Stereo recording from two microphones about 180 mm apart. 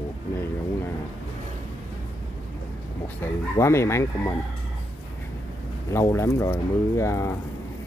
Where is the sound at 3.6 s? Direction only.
15° left (ahead or behind).